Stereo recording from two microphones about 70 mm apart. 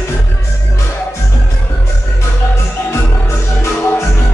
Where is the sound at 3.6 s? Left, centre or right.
Left.